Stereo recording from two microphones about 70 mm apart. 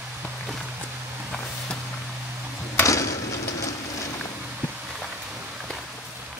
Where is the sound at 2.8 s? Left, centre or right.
Left.